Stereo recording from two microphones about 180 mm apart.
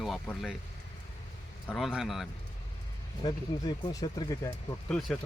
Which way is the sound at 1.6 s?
Centre (ahead or behind).